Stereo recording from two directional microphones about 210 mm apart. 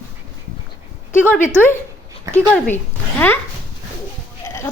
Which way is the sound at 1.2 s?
10° left (ahead or behind).